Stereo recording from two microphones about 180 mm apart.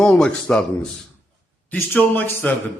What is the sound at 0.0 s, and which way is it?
A man's voice, 5° left (ahead or behind).